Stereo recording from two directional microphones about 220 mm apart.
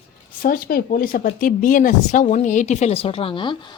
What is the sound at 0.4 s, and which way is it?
Speech, 40° left (ahead or behind).